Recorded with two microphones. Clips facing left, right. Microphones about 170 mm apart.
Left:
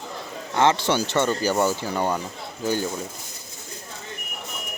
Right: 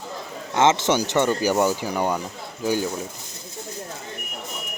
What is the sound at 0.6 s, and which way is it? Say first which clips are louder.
Speech: right 1 dB; 20° right (ahead or behind).